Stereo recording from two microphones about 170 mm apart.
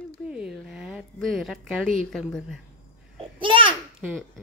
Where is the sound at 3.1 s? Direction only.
30° right (ahead or behind).